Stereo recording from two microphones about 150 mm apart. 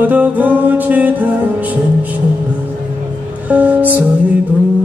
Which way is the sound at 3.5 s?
10° right (ahead or behind).